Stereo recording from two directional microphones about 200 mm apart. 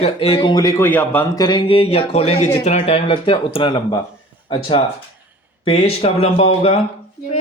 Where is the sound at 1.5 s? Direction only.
25° left (ahead or behind).